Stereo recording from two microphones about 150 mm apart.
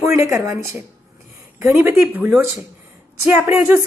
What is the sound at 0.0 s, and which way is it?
A woman's voice, 20° right (ahead or behind).